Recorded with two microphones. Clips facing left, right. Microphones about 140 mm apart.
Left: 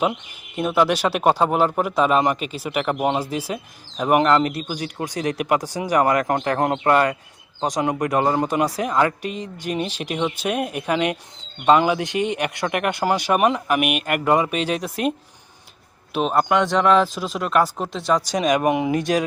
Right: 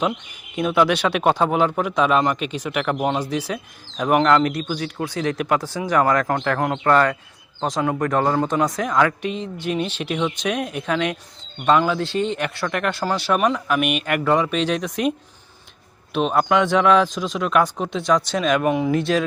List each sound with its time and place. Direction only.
0.5 s speech: 5° left (ahead or behind)
9.2 s speech: 45° left (ahead or behind)
10.2 s speech: 10° left (ahead or behind)
16.1 s speech: centre (ahead or behind)
18.3 s speech: 15° left (ahead or behind)